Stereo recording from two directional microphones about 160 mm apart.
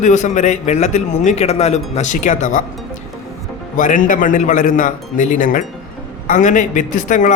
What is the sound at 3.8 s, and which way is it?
A man's voice, 55° left (ahead or behind).